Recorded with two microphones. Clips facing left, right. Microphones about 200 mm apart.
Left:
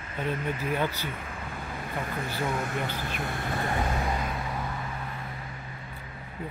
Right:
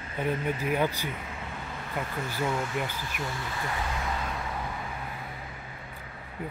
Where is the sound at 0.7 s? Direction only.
15° right (ahead or behind).